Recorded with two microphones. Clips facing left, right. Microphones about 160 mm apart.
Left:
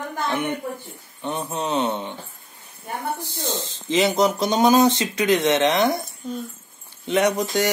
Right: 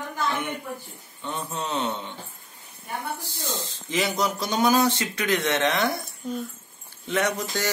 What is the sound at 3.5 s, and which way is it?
Speech, 25° left (ahead or behind).